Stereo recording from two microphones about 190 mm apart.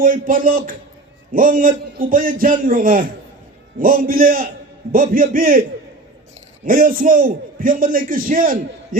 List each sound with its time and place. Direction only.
0.0 s a man's voice: 45° right (ahead or behind)
6.7 s a man's voice: 50° right (ahead or behind)